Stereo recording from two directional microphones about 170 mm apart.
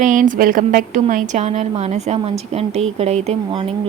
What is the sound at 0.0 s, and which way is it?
A woman's voice, 50° right (ahead or behind).